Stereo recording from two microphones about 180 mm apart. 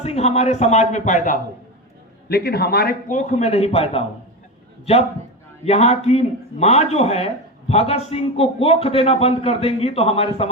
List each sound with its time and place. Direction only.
0.0 s a man's voice: 35° left (ahead or behind)
2.3 s a man's voice: 60° left (ahead or behind)
3.2 s a man's voice: 40° left (ahead or behind)